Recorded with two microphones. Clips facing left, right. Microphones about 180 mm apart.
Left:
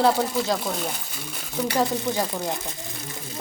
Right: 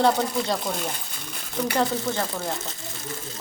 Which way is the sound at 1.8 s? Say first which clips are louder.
Left 2 dB; 10° left (ahead or behind).